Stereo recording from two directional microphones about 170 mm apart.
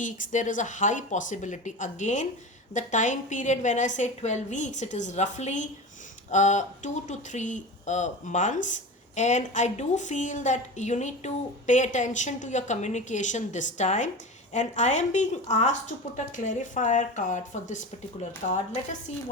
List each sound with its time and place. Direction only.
0.0 s speech: 50° left (ahead or behind)